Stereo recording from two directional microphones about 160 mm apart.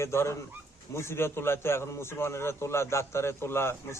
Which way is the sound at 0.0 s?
15° left (ahead or behind).